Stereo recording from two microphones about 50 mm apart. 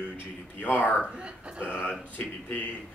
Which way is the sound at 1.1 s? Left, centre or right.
Right.